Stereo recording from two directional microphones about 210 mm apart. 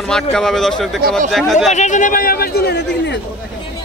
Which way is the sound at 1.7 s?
35° left (ahead or behind).